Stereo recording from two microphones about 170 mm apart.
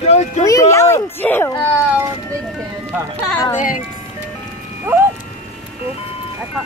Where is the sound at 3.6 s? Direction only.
55° left (ahead or behind).